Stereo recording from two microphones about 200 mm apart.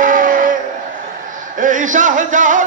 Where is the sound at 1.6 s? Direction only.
40° right (ahead or behind).